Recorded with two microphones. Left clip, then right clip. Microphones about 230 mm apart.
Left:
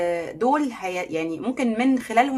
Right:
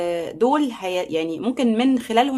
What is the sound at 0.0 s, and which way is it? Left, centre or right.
Speech, right.